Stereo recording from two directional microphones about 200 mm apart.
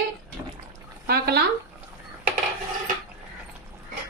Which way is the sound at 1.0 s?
50° right (ahead or behind).